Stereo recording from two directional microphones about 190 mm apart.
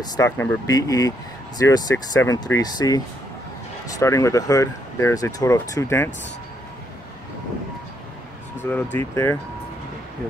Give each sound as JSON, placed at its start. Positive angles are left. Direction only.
{"t": 0.0, "sound": "speech", "side_deg": 20}
{"t": 8.9, "sound": "speech", "side_deg": 15}